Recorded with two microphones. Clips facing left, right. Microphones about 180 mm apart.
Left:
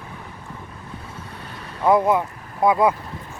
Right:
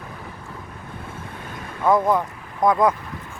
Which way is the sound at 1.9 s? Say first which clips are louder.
Left 1 dB; 10° left (ahead or behind).